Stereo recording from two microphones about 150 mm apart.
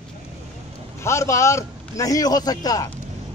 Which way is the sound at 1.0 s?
20° left (ahead or behind).